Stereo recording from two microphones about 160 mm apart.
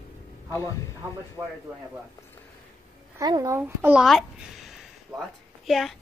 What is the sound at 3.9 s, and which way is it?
A woman's voice, centre (ahead or behind).